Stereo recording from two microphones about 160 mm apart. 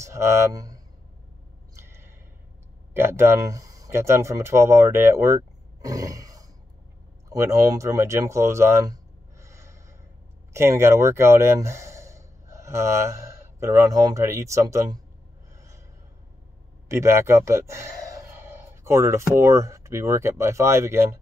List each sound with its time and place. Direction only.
0.0 s speech: 20° right (ahead or behind)
1.8 s a sound: 15° right (ahead or behind)
2.9 s speech: 15° right (ahead or behind)
16.9 s speech: 15° right (ahead or behind)